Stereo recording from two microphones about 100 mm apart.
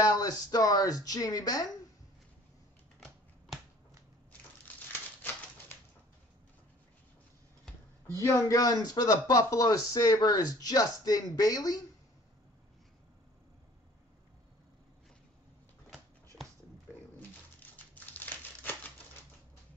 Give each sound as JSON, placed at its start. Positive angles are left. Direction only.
{"t": 0.0, "sound": "speech", "side_deg": 40}
{"t": 8.1, "sound": "speech", "side_deg": 30}
{"t": 17.6, "sound": "crumpling", "side_deg": 15}